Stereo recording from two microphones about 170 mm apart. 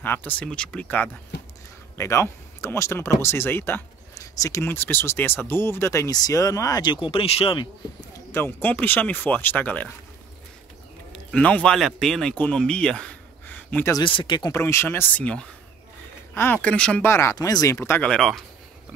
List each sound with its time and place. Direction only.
0.0 s speech: 10° left (ahead or behind); by 7.6 s 35° left (ahead or behind)
8.3 s speech: 15° left (ahead or behind)
11.1 s speech: 5° left (ahead or behind)
13.9 s speech: 30° left (ahead or behind)
14.5 s speech: 15° left (ahead or behind)